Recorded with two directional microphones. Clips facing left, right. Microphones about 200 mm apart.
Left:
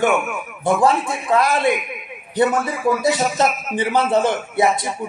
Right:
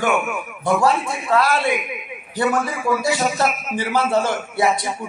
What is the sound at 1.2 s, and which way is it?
Speech, 20° left (ahead or behind).